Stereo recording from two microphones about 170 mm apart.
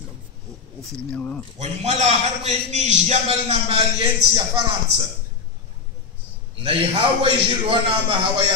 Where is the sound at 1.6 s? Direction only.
40° right (ahead or behind).